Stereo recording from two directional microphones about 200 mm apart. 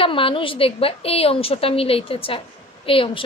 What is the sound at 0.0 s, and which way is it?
A woman's voice, 25° left (ahead or behind).